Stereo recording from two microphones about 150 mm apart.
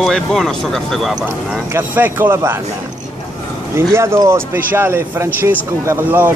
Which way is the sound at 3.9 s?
20° right (ahead or behind).